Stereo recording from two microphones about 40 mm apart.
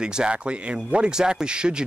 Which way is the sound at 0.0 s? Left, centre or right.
Right.